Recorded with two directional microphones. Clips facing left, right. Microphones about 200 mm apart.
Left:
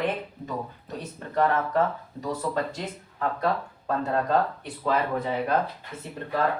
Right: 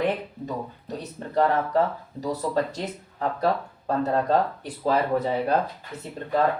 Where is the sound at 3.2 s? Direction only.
35° right (ahead or behind).